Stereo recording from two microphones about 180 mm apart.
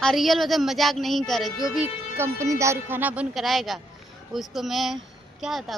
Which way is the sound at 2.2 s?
15° right (ahead or behind).